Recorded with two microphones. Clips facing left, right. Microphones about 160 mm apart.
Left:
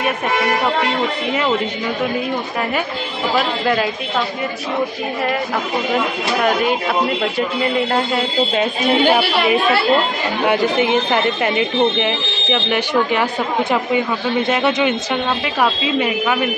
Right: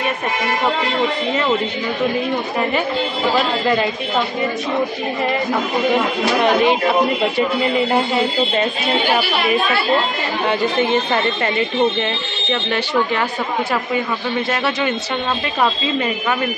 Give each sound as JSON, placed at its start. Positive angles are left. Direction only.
{"t": 3.3, "sound": "speech", "side_deg": 0}
{"t": 10.4, "sound": "speech", "side_deg": 10}
{"t": 14.5, "sound": "speech", "side_deg": 15}